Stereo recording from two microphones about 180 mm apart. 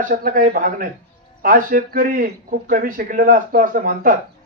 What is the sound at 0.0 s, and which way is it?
A man's voice, 50° right (ahead or behind).